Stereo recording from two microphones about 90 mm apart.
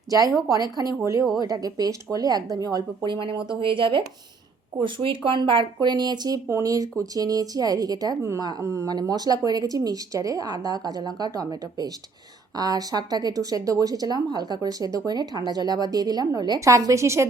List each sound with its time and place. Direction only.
0.1 s a woman's voice: 40° right (ahead or behind)
3.1 s a woman's voice: 70° right (ahead or behind); by 8.9 s 35° right (ahead or behind)
8.9 s speech: 50° right (ahead or behind); by 17.2 s 35° right (ahead or behind)